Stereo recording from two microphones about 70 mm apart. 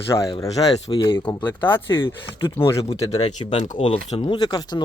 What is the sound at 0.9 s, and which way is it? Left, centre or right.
Speech, left.